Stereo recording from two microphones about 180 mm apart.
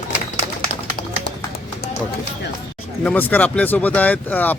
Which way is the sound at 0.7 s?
50° left (ahead or behind).